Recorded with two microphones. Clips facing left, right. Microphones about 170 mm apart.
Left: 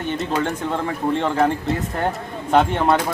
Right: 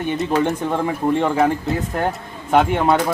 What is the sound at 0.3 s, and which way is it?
Speech, 15° right (ahead or behind).